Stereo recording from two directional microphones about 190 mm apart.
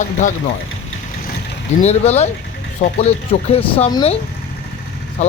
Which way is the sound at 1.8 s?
35° left (ahead or behind).